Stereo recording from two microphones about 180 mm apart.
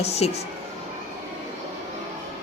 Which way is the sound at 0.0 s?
35° left (ahead or behind).